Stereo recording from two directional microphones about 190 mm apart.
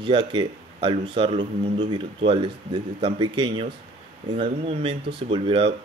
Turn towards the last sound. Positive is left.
turn(degrees=-30)  # may be behind; listen again after turning